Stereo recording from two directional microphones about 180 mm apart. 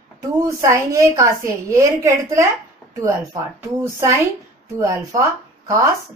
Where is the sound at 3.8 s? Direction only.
15° right (ahead or behind).